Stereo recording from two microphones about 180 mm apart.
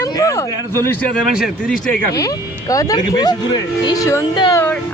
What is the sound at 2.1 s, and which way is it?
Speech, 20° left (ahead or behind).